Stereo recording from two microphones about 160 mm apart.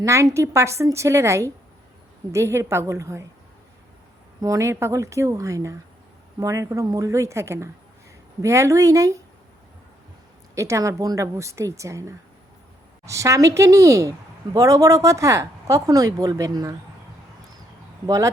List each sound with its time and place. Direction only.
0.0 s a woman's voice: 20° right (ahead or behind)
4.4 s a woman's voice: 20° right (ahead or behind)
10.5 s a woman's voice: 20° right (ahead or behind)
18.0 s a woman's voice: 20° right (ahead or behind)